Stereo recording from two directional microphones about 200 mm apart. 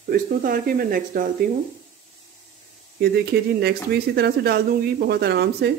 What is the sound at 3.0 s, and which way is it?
Speech, 55° right (ahead or behind).